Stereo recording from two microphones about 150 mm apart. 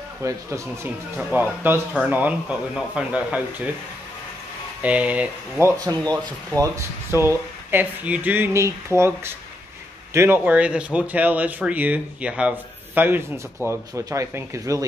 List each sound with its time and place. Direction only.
0.2 s speech: 20° right (ahead or behind)
4.8 s speech: 10° right (ahead or behind)